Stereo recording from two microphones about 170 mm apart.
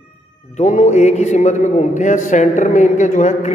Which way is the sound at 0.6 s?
50° left (ahead or behind).